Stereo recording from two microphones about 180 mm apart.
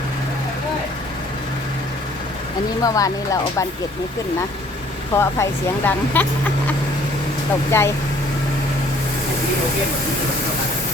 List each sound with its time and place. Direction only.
2.8 s speech: 20° left (ahead or behind)
5.1 s speech: 10° left (ahead or behind)
7.7 s speech: 15° left (ahead or behind)